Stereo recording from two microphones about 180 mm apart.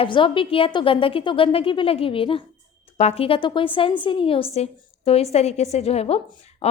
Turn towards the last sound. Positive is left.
turn(degrees=35)  # may be behind; listen again after turning